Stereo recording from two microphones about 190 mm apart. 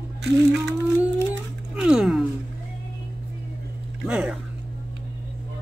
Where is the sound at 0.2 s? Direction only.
65° right (ahead or behind).